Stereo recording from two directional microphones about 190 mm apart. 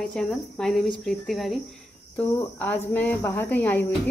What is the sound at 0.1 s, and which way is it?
Speech, 5° left (ahead or behind).